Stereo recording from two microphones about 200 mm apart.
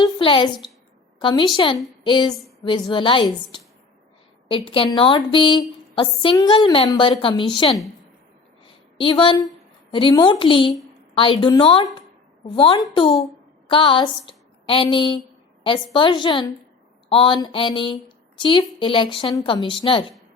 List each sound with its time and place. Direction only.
0.0 s a woman's voice: 25° left (ahead or behind)
9.0 s a woman's voice: 25° left (ahead or behind)